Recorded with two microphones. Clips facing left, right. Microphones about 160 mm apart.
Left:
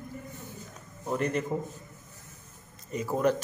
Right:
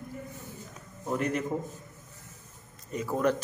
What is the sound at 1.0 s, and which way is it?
Speech, centre (ahead or behind).